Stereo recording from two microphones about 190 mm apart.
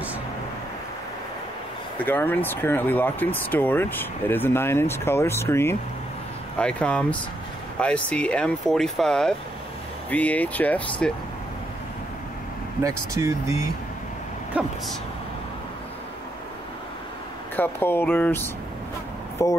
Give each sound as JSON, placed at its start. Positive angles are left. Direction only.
{"t": 2.0, "sound": "speech", "side_deg": 10}
{"t": 12.8, "sound": "speech", "side_deg": -15}
{"t": 17.6, "sound": "speech", "side_deg": 10}
{"t": 19.4, "sound": "speech", "side_deg": 15}